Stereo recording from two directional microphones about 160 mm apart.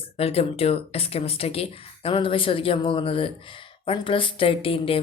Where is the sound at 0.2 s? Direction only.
40° left (ahead or behind).